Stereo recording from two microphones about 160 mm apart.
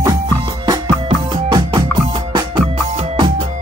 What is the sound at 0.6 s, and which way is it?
Music, 30° right (ahead or behind).